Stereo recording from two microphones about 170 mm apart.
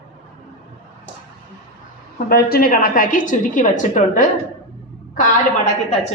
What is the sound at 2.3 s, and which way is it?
A woman's voice, 60° left (ahead or behind).